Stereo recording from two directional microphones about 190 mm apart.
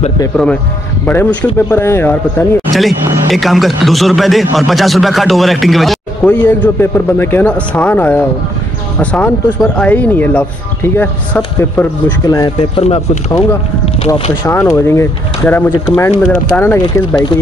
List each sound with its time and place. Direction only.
1.0 s speech: 10° left (ahead or behind)
2.7 s speech: centre (ahead or behind)
12.5 s speech: 30° left (ahead or behind)
14.4 s speech: 15° left (ahead or behind)